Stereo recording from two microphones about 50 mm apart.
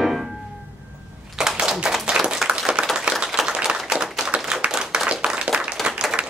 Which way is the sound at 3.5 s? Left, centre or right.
Centre.